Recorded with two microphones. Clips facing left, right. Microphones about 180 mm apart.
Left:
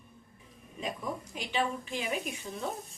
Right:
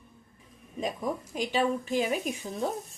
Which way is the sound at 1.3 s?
40° right (ahead or behind).